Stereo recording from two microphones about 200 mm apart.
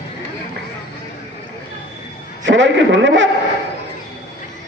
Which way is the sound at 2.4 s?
65° right (ahead or behind).